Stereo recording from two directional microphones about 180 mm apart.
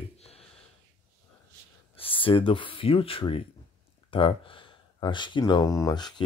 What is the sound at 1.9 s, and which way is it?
Speech, 30° left (ahead or behind).